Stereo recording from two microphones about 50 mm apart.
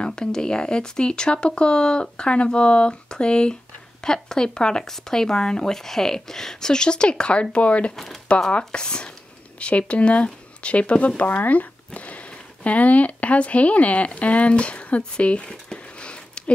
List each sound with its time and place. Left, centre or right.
0.0 s speech: centre
7.9 s speech: centre
8.4 s speech: centre